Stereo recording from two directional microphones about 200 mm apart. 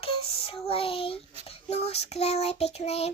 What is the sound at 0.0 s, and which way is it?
Child singing, 30° left (ahead or behind).